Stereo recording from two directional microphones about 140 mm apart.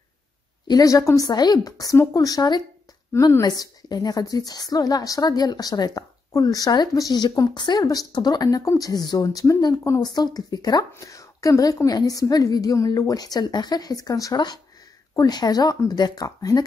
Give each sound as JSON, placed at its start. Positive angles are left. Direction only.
{"t": 0.7, "sound": "a woman's voice", "side_deg": 25}